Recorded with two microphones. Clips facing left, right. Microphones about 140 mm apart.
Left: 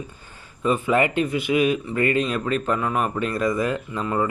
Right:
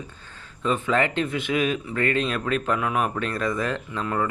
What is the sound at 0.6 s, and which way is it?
Speech, 10° left (ahead or behind).